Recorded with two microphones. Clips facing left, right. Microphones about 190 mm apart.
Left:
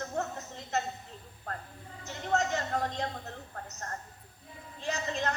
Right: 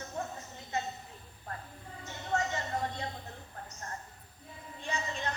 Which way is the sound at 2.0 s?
80° left.